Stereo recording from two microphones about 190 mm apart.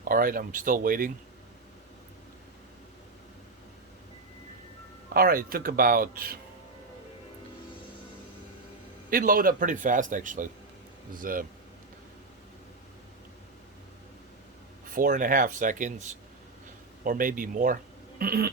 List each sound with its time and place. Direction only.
0.0 s a man's voice: 45° right (ahead or behind)
5.1 s a man's voice: 50° right (ahead or behind)
9.0 s a man's voice: 50° right (ahead or behind)
14.8 s a man's voice: 45° right (ahead or behind)